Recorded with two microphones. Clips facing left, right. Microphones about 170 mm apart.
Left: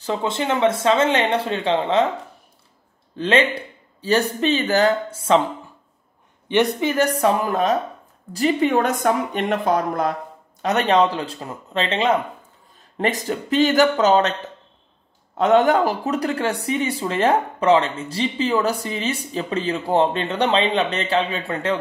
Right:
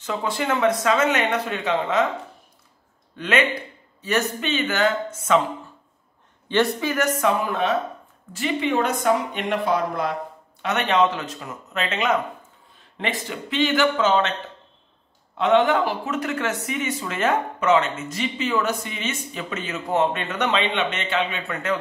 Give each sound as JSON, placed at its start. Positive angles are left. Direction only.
{"t": 0.0, "sound": "speech", "side_deg": 30}
{"t": 3.2, "sound": "speech", "side_deg": 30}
{"t": 6.5, "sound": "speech", "side_deg": 20}
{"t": 12.9, "sound": "speech", "side_deg": 40}
{"t": 15.3, "sound": "speech", "side_deg": 45}